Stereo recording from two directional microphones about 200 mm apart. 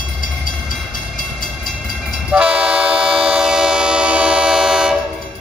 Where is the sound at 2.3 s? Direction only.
5° right (ahead or behind).